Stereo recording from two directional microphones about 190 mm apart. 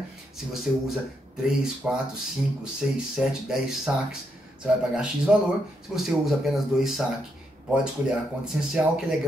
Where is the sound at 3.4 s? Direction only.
5° right (ahead or behind).